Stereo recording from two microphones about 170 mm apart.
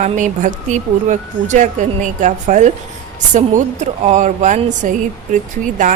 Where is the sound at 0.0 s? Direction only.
45° right (ahead or behind).